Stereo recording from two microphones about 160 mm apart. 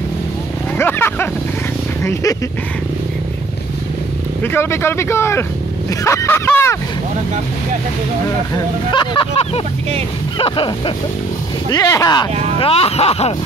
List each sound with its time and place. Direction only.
0.7 s speech: 15° left (ahead or behind)
4.4 s speech: 15° left (ahead or behind)
8.9 s speech: 30° left (ahead or behind)
11.7 s speech: 25° left (ahead or behind); by 13.3 s 40° left (ahead or behind)